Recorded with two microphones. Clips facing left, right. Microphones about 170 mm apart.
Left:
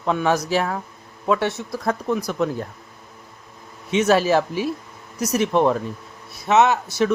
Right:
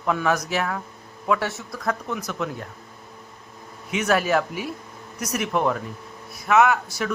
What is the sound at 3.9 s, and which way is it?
A man's voice, 30° left (ahead or behind).